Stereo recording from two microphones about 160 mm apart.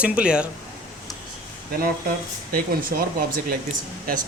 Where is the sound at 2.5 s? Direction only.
65° right (ahead or behind).